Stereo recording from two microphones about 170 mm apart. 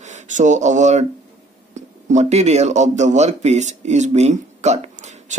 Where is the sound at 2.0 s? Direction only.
45° right (ahead or behind).